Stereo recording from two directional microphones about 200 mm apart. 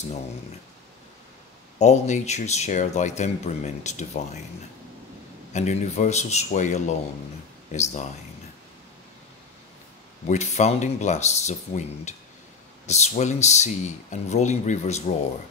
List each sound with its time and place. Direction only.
1.8 s speech: 35° left (ahead or behind)
5.5 s speech: 35° left (ahead or behind)
10.2 s speech: 35° left (ahead or behind)